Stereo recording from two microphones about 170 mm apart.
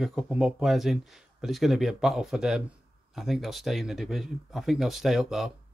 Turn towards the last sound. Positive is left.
turn(degrees=0)  # may be behind; listen again after turning